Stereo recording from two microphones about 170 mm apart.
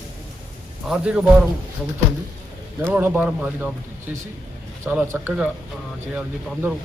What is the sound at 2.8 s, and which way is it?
Speech, 10° right (ahead or behind).